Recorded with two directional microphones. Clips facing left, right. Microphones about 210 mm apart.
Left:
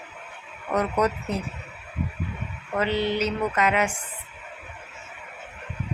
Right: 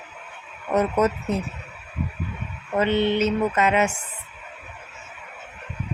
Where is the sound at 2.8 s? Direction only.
25° right (ahead or behind).